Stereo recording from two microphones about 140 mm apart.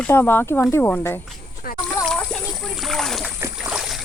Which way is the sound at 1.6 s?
90° left.